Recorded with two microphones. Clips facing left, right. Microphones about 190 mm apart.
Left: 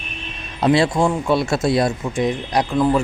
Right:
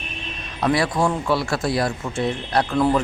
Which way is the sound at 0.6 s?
25° left (ahead or behind).